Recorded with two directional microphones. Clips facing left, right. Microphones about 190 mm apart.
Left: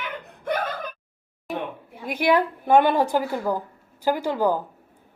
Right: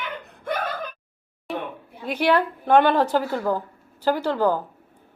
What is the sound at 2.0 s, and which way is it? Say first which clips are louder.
A woman's voice: even; 10° left (ahead or behind).